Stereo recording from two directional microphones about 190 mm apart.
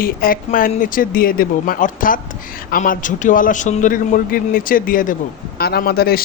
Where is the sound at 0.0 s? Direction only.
50° left (ahead or behind).